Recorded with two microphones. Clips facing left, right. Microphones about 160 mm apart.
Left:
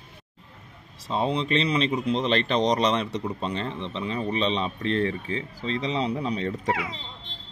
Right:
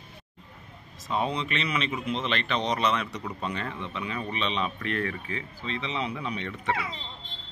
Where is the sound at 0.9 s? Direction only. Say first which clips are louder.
Left 3 dB; 30° left (ahead or behind).